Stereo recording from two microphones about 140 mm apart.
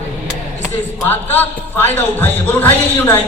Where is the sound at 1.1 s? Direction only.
15° left (ahead or behind).